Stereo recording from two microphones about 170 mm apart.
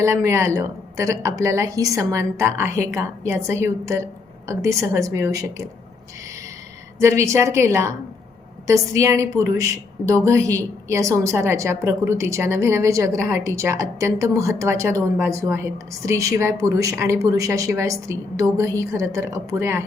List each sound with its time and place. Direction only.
0.0 s a woman's voice: 15° right (ahead or behind)
7.0 s a woman's voice: 15° right (ahead or behind)